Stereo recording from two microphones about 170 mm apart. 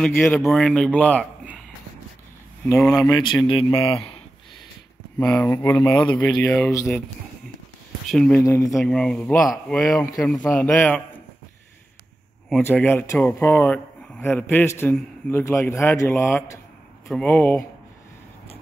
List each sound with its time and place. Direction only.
0.0 s speech: 5° left (ahead or behind)
3.0 s a man's voice: 25° left (ahead or behind)
5.2 s speech: 10° left (ahead or behind)
8.1 s speech: 5° left (ahead or behind)
8.4 s a man's voice: 20° left (ahead or behind)
8.7 s speech: 5° left (ahead or behind)
12.4 s a man's voice: 5° left (ahead or behind)